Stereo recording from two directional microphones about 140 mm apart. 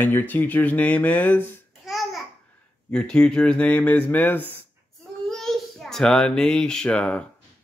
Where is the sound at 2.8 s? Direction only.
5° left (ahead or behind).